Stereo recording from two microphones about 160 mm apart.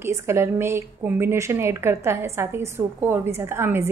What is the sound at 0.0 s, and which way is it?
A woman's voice, 15° right (ahead or behind).